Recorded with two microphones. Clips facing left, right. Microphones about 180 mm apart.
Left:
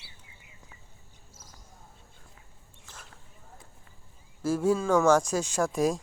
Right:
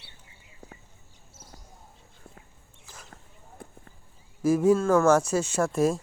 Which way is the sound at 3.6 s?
60° right (ahead or behind).